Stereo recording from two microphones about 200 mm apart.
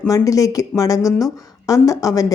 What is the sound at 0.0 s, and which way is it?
A woman's voice, 15° left (ahead or behind).